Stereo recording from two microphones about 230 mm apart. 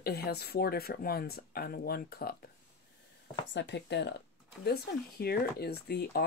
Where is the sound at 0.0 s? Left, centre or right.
Left.